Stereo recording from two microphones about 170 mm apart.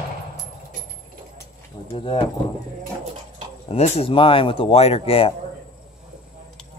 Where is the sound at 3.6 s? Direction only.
40° left (ahead or behind).